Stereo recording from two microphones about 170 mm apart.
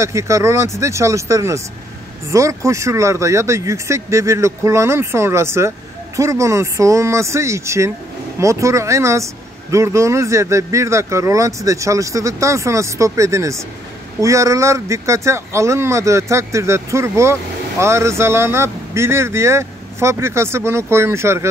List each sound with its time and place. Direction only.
0.0 s speech: 15° right (ahead or behind)